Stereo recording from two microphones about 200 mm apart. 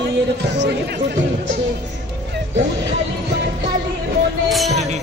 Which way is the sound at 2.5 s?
65° right (ahead or behind).